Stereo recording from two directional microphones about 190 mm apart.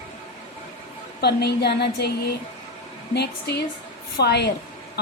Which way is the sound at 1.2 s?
60° left (ahead or behind).